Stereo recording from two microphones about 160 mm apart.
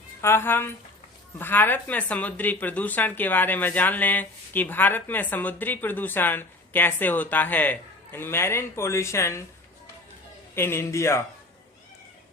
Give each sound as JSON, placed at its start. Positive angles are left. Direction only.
{"t": 0.2, "sound": "speech", "side_deg": 15}
{"t": 10.5, "sound": "speech", "side_deg": 15}